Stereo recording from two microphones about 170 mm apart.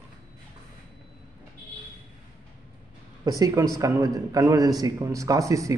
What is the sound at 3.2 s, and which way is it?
A man's voice, 20° right (ahead or behind).